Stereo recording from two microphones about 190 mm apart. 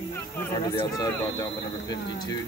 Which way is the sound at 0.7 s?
20° left (ahead or behind).